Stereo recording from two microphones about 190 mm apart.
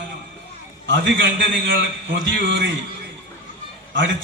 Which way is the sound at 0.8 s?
75° right (ahead or behind).